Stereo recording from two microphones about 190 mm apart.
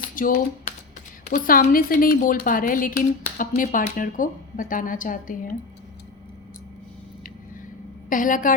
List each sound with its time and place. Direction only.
0.2 s a woman's voice: 45° left (ahead or behind)
8.1 s a woman's voice: 45° left (ahead or behind)